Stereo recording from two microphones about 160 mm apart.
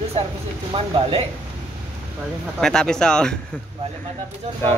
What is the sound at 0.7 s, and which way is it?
Speech, 35° right (ahead or behind).